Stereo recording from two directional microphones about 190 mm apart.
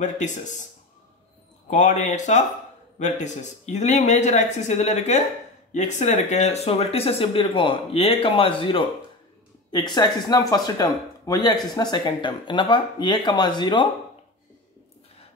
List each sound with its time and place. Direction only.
0.0 s speech: 40° left (ahead or behind)
1.7 s speech: 40° left (ahead or behind); by 13.8 s 25° left (ahead or behind)